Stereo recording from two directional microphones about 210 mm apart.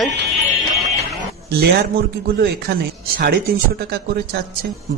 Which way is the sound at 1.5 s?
50° right (ahead or behind).